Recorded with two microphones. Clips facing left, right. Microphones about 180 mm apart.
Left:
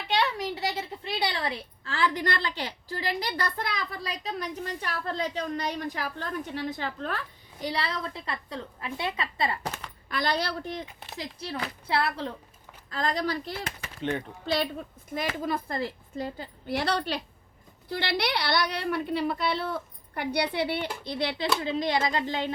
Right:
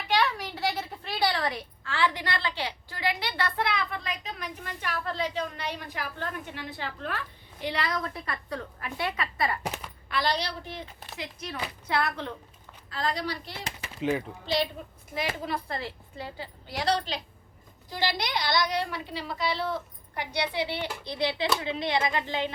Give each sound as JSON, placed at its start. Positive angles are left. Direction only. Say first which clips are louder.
{"t": 0.1, "sound": "a woman's voice", "louder": "even", "side_deg": 25}
{"t": 9.6, "sound": "a sound", "louder": "right 1 dB", "side_deg": -10}
{"t": 10.1, "sound": "a woman's voice", "louder": "left 1 dB", "side_deg": 50}
{"t": 11.2, "sound": "a woman's voice", "louder": "left 2 dB", "side_deg": 30}
{"t": 12.9, "sound": "a woman's voice", "louder": "left 2 dB", "side_deg": 45}
{"t": 14.0, "sound": "speech", "louder": "right 3 dB", "side_deg": -5}
{"t": 15.4, "sound": "a woman's voice", "louder": "left 3 dB", "side_deg": 45}
{"t": 21.2, "sound": "a woman's voice", "louder": "right 1 dB", "side_deg": 50}